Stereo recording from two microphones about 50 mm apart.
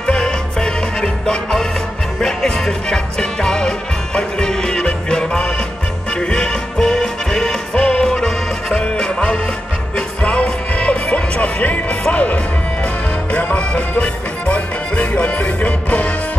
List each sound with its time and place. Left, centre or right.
0.0 s music: centre